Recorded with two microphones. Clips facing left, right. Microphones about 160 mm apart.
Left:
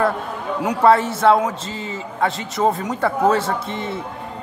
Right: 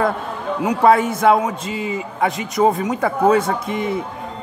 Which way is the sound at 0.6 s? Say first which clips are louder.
Right 1 dB; 10° right (ahead or behind).